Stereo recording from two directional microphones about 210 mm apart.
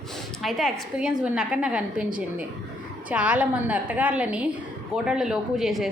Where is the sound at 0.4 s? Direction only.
Centre (ahead or behind).